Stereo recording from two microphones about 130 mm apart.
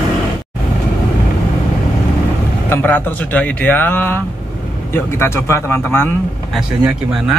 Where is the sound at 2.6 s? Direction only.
15° left (ahead or behind).